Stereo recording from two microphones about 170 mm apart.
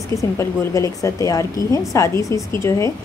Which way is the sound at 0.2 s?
20° left (ahead or behind).